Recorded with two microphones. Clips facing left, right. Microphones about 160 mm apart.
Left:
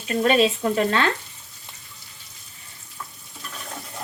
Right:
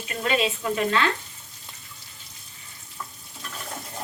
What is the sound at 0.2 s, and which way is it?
Speech, 40° left (ahead or behind).